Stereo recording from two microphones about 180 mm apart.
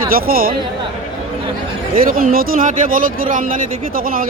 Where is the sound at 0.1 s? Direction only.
55° right (ahead or behind).